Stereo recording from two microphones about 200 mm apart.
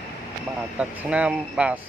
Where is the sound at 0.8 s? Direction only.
5° right (ahead or behind).